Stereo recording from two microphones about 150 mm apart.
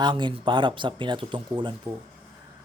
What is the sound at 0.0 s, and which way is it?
A man's voice, 30° right (ahead or behind).